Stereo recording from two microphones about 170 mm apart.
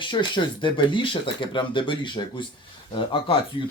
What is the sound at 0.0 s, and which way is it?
Speech, 25° left (ahead or behind).